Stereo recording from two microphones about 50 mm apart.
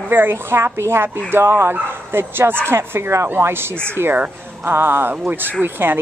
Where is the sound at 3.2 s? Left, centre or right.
Right.